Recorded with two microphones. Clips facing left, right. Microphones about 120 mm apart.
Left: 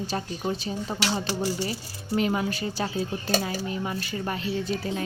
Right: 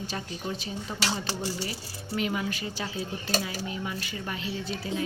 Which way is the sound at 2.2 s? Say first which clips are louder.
Left 4 dB; 35° left (ahead or behind).